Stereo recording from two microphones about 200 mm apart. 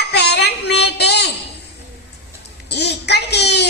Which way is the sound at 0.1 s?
55° left (ahead or behind).